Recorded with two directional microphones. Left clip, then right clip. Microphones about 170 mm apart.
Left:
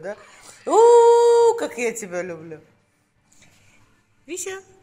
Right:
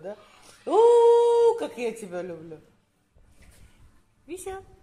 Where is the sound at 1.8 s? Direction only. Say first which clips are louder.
Left 6 dB; 10° left (ahead or behind).